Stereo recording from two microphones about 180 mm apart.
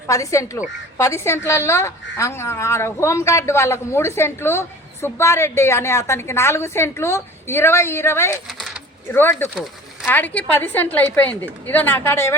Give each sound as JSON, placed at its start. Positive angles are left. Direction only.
{"t": 0.1, "sound": "a woman's voice", "side_deg": 15}
{"t": 8.4, "sound": "speech", "side_deg": 0}
{"t": 9.4, "sound": "a woman's voice", "side_deg": 10}